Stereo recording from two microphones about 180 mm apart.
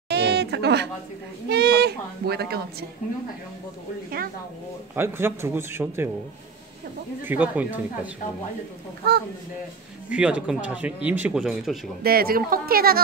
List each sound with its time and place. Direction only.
0.1 s a sound: 65° right (ahead or behind)
1.5 s speech: 65° right (ahead or behind)
4.9 s speech: 15° right (ahead or behind)
7.2 s speech: 10° right (ahead or behind)
10.0 s speech: 5° right (ahead or behind)
12.0 s speech: 55° right (ahead or behind)